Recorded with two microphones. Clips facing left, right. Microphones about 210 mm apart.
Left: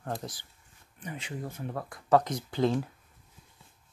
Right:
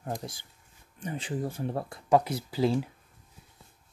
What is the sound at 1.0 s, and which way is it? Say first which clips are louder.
Speech: right 6 dB; 30° right (ahead or behind).